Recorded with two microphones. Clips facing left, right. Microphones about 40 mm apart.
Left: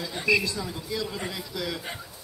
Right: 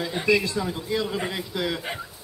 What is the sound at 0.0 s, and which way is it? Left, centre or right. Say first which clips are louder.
Speech: right 2 dB; right.